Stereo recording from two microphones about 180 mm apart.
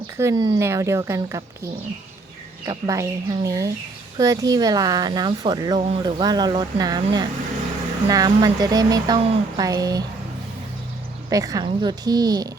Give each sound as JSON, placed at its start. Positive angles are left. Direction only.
{"t": 0.2, "sound": "speech", "side_deg": -20}
{"t": 2.6, "sound": "speech", "side_deg": -20}
{"t": 11.3, "sound": "speech", "side_deg": -20}